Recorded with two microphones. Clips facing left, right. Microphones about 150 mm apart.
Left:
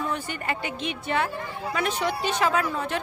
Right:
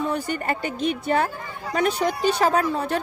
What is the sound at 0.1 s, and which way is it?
A woman's voice, 40° right (ahead or behind).